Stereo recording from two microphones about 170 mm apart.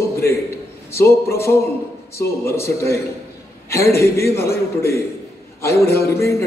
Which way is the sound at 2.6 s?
15° left (ahead or behind).